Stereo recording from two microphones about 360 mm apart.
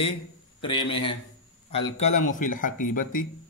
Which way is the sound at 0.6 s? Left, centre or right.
Centre.